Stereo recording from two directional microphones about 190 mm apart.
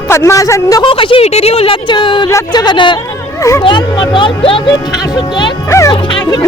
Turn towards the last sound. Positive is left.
turn(degrees=25)  # may be behind; listen again after turning